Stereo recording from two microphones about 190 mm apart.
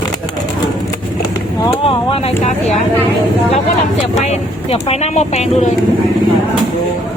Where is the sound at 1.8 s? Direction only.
30° left (ahead or behind).